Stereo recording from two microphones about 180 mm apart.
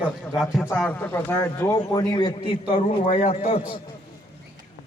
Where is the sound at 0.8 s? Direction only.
10° left (ahead or behind).